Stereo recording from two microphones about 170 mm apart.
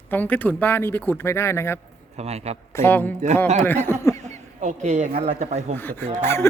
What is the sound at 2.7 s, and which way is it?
Speech, 15° left (ahead or behind).